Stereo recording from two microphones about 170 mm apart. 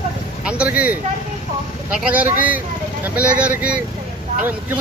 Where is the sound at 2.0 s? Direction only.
10° right (ahead or behind).